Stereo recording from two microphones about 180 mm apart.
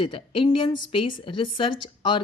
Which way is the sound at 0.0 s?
25° left (ahead or behind).